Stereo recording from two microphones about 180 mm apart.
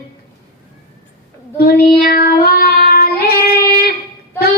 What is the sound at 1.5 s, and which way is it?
Child singing, 60° left (ahead or behind).